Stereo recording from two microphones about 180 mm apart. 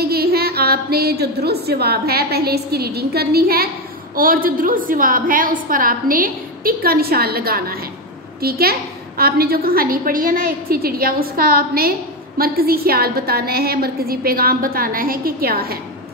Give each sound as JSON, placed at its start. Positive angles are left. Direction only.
{"t": 0.0, "sound": "a woman's voice", "side_deg": -60}